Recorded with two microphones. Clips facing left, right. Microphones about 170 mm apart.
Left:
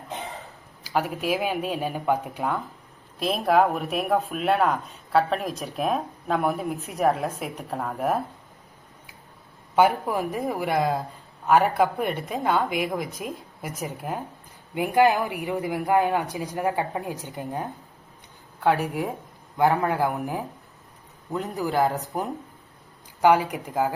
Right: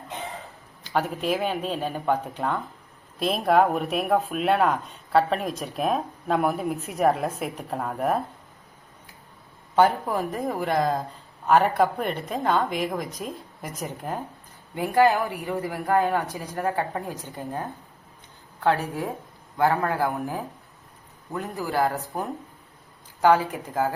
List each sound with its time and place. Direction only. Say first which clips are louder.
0.9 s speech: even; 5° left (ahead or behind)
9.7 s speech: even; 10° left (ahead or behind)